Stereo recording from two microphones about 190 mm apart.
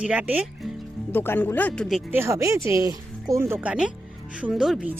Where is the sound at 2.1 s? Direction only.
15° right (ahead or behind).